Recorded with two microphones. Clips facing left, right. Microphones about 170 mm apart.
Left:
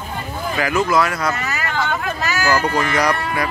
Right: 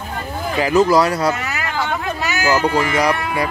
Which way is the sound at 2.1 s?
15° right (ahead or behind).